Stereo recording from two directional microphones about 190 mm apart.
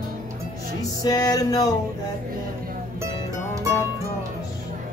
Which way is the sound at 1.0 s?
20° left (ahead or behind).